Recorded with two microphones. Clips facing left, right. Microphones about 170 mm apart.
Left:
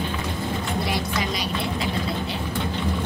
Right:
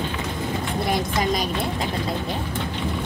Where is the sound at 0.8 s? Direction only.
45° right (ahead or behind).